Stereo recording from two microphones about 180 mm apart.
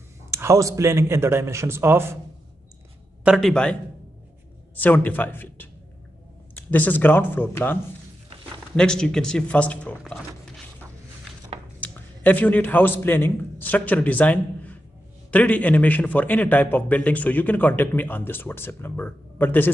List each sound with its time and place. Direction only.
0.3 s speech: 15° right (ahead or behind)
3.3 s a man's voice: centre (ahead or behind)
4.7 s a man's voice: 10° left (ahead or behind)
11.8 s a man's voice: 10° left (ahead or behind)